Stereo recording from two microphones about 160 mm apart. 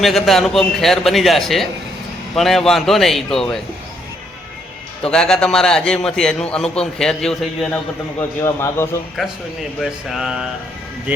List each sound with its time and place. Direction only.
0.0 s a man's voice: centre (ahead or behind)
5.0 s a man's voice: 5° left (ahead or behind)
8.6 s a man's voice: 15° left (ahead or behind)
9.8 s a man's voice: centre (ahead or behind)